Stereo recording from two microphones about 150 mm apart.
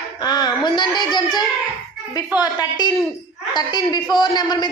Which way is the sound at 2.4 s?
30° left (ahead or behind).